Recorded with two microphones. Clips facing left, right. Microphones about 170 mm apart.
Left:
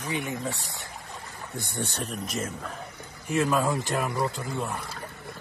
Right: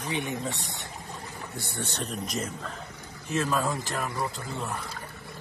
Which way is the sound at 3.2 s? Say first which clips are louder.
Left 3 dB; 15° left (ahead or behind).